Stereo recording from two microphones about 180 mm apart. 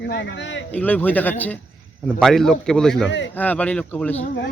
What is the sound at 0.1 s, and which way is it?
Speech, 75° left (ahead or behind).